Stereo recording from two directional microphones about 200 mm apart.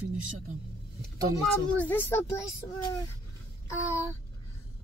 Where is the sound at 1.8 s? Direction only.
10° left (ahead or behind).